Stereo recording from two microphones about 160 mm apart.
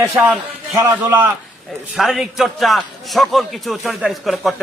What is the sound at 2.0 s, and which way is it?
A man's voice, centre (ahead or behind).